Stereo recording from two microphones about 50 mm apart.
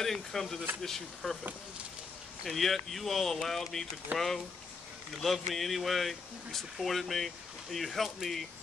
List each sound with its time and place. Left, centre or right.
0.0 s speech: centre
2.4 s speech: centre
4.1 s speech: right
5.2 s speech: centre